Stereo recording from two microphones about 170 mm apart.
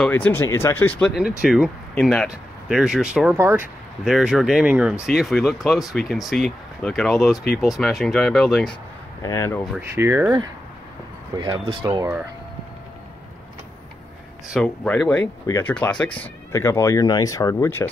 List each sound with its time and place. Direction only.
0.0 s speech: 10° left (ahead or behind)
1.4 s speech: 5° right (ahead or behind)
3.3 s speech: 15° right (ahead or behind)
4.0 s speech: 5° right (ahead or behind)
9.2 s speech: 15° left (ahead or behind)
9.8 s speech: 15° right (ahead or behind)
11.3 s speech: 30° right (ahead or behind)
14.5 s speech: 5° left (ahead or behind)